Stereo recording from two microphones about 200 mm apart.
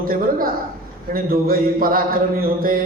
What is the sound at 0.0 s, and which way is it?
Speech, 45° right (ahead or behind).